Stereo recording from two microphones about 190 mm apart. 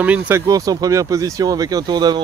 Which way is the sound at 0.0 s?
10° right (ahead or behind).